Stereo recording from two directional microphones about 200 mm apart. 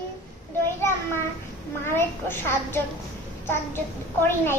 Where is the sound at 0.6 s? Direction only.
10° left (ahead or behind).